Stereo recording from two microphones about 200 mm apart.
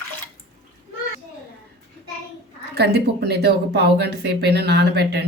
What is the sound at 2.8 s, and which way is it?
Speech, 55° right (ahead or behind).